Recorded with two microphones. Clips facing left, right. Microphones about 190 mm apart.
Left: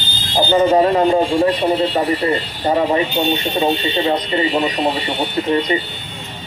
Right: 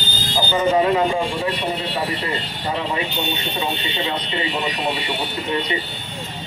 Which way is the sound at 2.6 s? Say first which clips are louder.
Left 9 dB; 45° left (ahead or behind).